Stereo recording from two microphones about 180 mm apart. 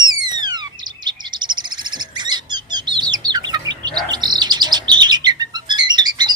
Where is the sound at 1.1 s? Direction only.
25° right (ahead or behind).